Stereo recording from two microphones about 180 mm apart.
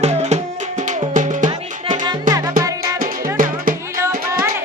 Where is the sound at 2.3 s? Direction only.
20° right (ahead or behind).